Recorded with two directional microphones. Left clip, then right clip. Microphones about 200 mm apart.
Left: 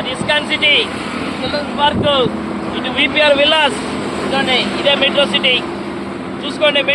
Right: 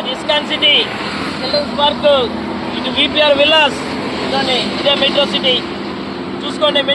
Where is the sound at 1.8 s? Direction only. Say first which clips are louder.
Right 1 dB; 60° right (ahead or behind).